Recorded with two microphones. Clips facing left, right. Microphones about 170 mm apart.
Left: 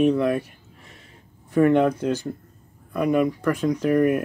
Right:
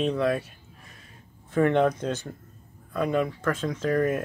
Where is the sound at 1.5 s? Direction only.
10° left (ahead or behind).